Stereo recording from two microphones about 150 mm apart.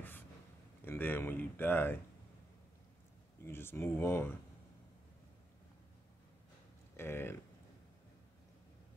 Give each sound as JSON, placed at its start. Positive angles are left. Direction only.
{"t": 0.8, "sound": "speech", "side_deg": 15}
{"t": 3.4, "sound": "speech", "side_deg": 15}
{"t": 7.0, "sound": "speech", "side_deg": 15}